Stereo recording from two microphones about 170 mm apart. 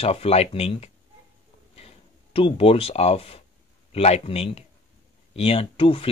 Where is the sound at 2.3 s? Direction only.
35° left (ahead or behind).